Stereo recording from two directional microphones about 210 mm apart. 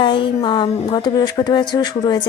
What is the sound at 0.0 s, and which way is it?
Speech, 20° left (ahead or behind).